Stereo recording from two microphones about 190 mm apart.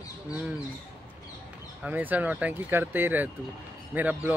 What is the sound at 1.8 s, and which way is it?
Speech, 10° right (ahead or behind).